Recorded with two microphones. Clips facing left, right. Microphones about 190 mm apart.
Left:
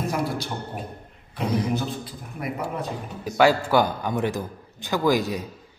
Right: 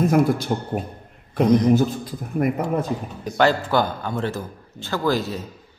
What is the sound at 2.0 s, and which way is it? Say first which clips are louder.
Speech: right 10 dB; 50° right (ahead or behind).